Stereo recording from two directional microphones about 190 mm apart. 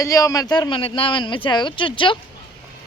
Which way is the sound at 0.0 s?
15° left (ahead or behind).